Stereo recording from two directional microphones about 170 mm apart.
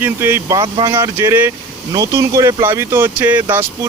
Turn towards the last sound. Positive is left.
turn(degrees=-10)  # may be behind; listen again after turning